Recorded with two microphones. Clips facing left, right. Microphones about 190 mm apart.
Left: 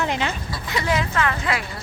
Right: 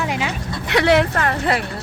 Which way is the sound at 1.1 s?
40° right (ahead or behind).